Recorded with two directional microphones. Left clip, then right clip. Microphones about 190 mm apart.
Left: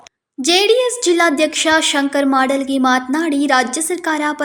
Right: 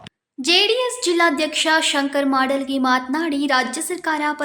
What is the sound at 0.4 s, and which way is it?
A woman's voice, 20° left (ahead or behind).